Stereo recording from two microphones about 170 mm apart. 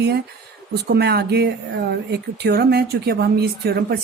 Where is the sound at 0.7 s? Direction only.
70° right (ahead or behind).